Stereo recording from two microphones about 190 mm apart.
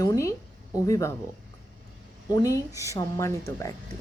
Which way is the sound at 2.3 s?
20° left (ahead or behind).